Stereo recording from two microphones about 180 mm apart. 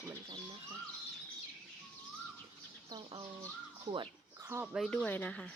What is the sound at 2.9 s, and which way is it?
Speech, 25° right (ahead or behind).